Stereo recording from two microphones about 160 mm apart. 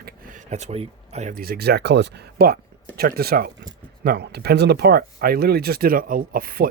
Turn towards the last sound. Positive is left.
turn(degrees=-65)  # may be behind; listen again after turning